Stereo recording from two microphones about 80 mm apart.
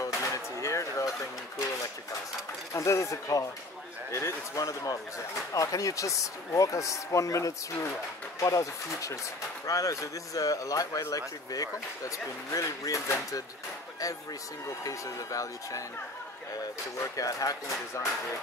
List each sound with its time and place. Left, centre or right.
0.0 s a sound: left
2.7 s a man's voice: left
14.8 s speech: left
17.0 s speech: left